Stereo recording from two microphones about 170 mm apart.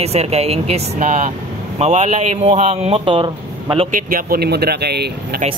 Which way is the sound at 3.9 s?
55° right (ahead or behind).